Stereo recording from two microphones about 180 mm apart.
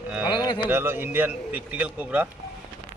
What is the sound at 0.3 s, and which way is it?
Music, 25° left (ahead or behind).